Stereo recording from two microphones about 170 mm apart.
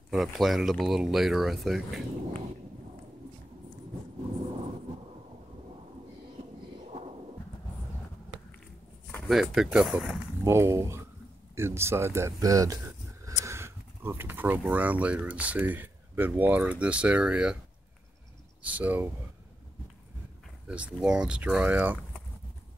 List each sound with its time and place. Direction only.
0.1 s speech: centre (ahead or behind)
9.3 s speech: centre (ahead or behind)
10.4 s speech: 15° right (ahead or behind)
18.6 s speech: 10° right (ahead or behind)
20.6 s speech: 5° right (ahead or behind)